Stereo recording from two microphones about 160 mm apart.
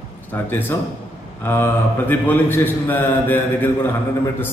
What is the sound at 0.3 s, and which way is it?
A man's voice, 15° left (ahead or behind).